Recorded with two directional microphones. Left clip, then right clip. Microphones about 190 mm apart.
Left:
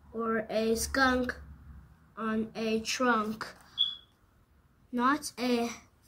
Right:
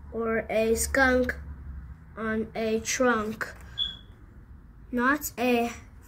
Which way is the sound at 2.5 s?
20° left (ahead or behind).